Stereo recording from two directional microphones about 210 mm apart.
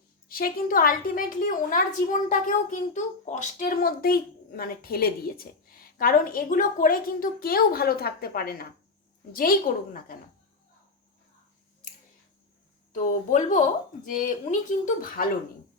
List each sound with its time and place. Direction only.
0.3 s a woman's voice: 45° left (ahead or behind)
11.8 s a sound: 35° left (ahead or behind)
12.9 s speech: 35° left (ahead or behind)